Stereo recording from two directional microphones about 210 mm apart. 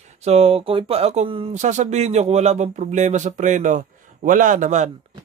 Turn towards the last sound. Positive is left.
turn(degrees=-35)  # may be behind; listen again after turning